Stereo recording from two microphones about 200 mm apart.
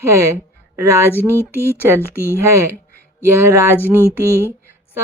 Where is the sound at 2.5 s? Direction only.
15° right (ahead or behind).